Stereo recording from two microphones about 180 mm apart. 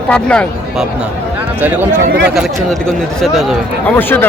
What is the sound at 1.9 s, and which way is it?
Speech, 70° right (ahead or behind).